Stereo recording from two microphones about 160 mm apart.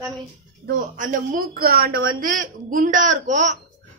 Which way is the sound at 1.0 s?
60° right (ahead or behind).